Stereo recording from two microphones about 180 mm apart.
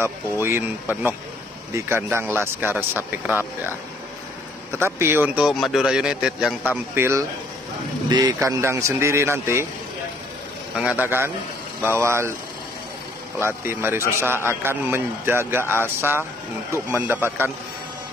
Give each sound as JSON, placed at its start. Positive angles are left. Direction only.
{"t": 0.0, "sound": "a man's voice", "side_deg": -15}
{"t": 4.7, "sound": "a man's voice", "side_deg": -15}
{"t": 7.0, "sound": "a man's voice", "side_deg": -15}
{"t": 10.8, "sound": "a man's voice", "side_deg": -10}
{"t": 13.4, "sound": "a man's voice", "side_deg": -15}